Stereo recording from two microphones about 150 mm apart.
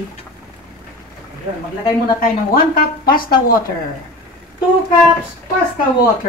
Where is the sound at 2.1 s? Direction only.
75° left (ahead or behind).